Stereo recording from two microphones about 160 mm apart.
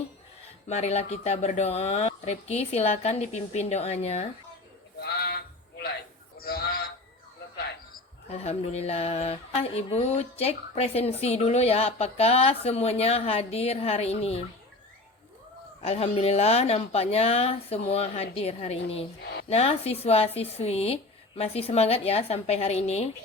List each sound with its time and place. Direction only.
0.7 s speech: 40° left (ahead or behind)
4.9 s sheep: 80° left
6.3 s a sound: 70° left (ahead or behind)
8.3 s speech: 40° left (ahead or behind)
15.8 s speech: 40° left (ahead or behind)
19.2 s a sound: 80° left
19.5 s speech: 40° left (ahead or behind)